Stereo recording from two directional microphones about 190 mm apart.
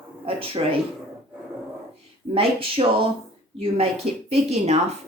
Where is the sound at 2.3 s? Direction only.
30° right (ahead or behind).